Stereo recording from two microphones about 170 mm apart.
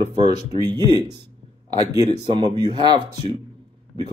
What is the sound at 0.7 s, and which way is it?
Speech, 25° right (ahead or behind).